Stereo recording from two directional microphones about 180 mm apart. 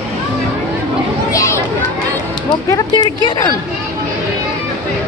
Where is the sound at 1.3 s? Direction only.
15° left (ahead or behind).